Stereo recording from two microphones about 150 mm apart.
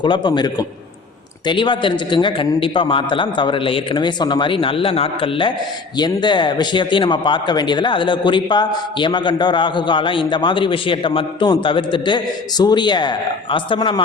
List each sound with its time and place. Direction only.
0.0 s a man's voice: 30° left (ahead or behind)